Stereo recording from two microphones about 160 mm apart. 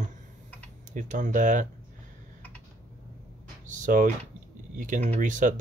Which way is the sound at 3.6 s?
55° right (ahead or behind).